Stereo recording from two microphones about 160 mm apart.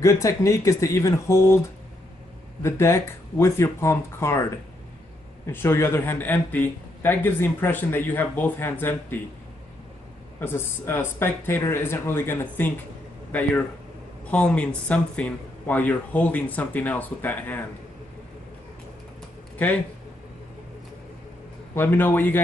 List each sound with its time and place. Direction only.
0.0 s speech: 20° left (ahead or behind)
2.6 s a man's voice: 15° left (ahead or behind)
5.5 s a man's voice: 15° left (ahead or behind)
10.4 s a man's voice: 15° left (ahead or behind)
21.7 s a man's voice: 15° left (ahead or behind)